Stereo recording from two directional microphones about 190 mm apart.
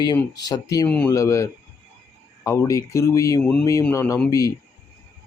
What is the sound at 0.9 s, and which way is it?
Speech, 5° left (ahead or behind).